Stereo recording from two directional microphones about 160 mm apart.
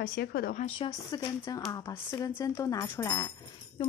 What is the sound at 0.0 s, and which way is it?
Speech, 75° left (ahead or behind).